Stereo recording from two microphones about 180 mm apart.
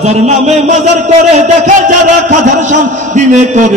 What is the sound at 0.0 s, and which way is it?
Speech, 40° right (ahead or behind).